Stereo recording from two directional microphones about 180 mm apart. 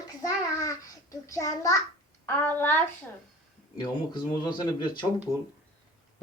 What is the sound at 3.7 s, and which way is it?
Speech, 25° left (ahead or behind).